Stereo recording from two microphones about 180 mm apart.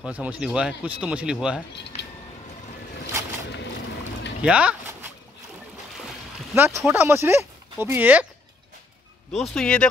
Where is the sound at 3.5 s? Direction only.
75° left (ahead or behind).